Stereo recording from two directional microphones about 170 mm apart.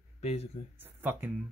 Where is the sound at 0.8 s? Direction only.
10° right (ahead or behind).